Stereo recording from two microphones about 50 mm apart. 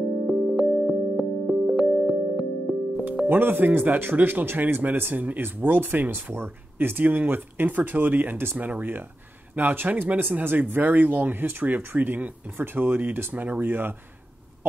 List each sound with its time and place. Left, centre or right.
0.3 s music: centre
3.3 s speech: right